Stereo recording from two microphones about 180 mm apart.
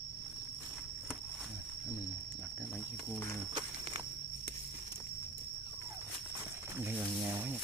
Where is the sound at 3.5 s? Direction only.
30° right (ahead or behind).